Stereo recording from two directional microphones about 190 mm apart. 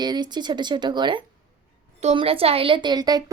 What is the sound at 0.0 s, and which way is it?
A woman's voice, 20° right (ahead or behind).